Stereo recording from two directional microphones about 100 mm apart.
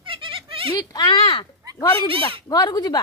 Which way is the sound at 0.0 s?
60° right (ahead or behind).